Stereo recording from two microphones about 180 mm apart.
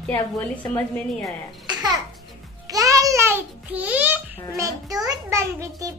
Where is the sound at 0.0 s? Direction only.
10° left (ahead or behind).